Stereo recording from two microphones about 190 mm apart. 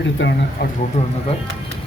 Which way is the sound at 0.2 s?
80° left.